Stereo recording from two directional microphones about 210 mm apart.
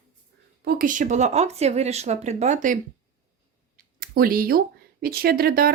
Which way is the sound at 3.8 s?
45° right (ahead or behind).